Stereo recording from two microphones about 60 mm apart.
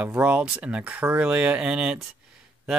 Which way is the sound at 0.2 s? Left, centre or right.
Right.